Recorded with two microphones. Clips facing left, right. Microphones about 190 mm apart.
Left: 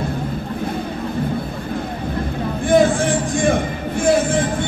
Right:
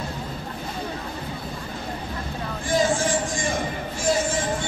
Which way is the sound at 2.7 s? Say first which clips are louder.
Left 7 dB; 60° left (ahead or behind).